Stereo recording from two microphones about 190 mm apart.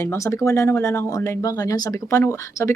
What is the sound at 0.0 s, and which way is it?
Speech, 15° left (ahead or behind).